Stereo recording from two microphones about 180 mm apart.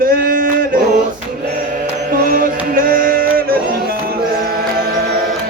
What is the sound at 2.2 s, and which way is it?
Music, 50° right (ahead or behind).